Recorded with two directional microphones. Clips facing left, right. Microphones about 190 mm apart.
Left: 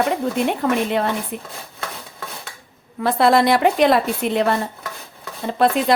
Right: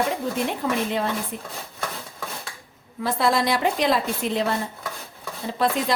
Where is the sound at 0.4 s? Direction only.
60° left (ahead or behind).